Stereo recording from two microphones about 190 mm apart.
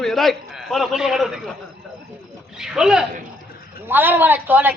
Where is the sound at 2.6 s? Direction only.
5° right (ahead or behind).